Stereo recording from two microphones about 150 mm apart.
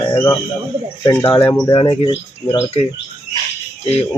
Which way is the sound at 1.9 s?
25° left (ahead or behind).